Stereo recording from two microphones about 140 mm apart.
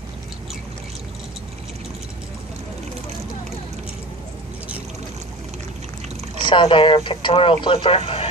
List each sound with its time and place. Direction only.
6.4 s speech: 35° left (ahead or behind)